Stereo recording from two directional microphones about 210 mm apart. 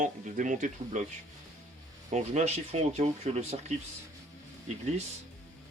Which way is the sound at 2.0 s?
35° right (ahead or behind).